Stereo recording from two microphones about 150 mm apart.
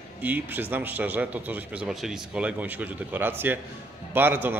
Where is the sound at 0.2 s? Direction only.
10° right (ahead or behind).